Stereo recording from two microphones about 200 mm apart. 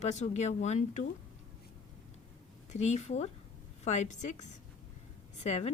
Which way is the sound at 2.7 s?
35° left (ahead or behind).